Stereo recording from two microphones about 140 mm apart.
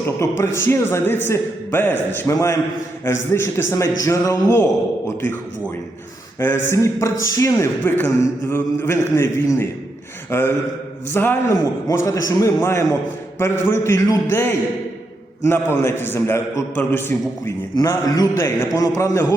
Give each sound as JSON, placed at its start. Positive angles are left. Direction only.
{"t": 0.2, "sound": "a man's voice", "side_deg": 20}
{"t": 6.4, "sound": "a man's voice", "side_deg": 15}